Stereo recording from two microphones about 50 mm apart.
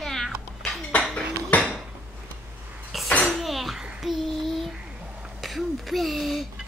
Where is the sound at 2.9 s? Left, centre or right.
Centre.